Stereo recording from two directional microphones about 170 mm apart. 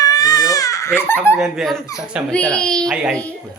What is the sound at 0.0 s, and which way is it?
Crying, 20° left (ahead or behind).